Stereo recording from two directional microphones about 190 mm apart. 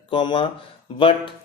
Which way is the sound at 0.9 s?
25° left (ahead or behind).